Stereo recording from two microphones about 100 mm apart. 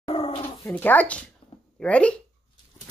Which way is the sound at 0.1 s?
70° left (ahead or behind).